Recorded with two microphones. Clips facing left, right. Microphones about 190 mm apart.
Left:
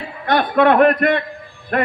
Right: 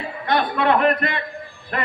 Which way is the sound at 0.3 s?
50° left (ahead or behind).